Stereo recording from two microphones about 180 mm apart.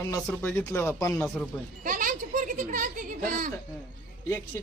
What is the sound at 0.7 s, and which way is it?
Speech, 15° left (ahead or behind).